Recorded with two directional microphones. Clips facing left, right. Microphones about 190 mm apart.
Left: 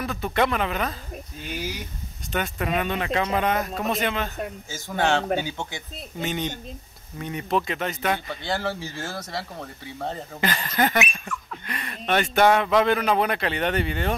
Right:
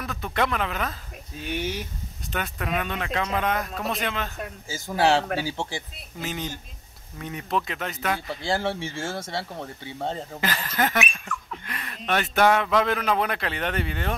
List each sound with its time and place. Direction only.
0.0 s a man's voice: centre (ahead or behind)
2.3 s a man's voice: centre (ahead or behind)
4.9 s speech: 35° right (ahead or behind)
6.1 s a man's voice: centre (ahead or behind)
8.5 s speech: 30° right (ahead or behind)
10.4 s a man's voice: centre (ahead or behind)